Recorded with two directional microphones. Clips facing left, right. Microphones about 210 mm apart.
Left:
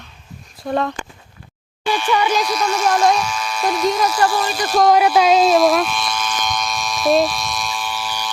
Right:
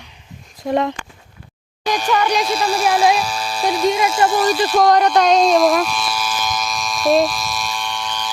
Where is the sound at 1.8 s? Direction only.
40° right (ahead or behind).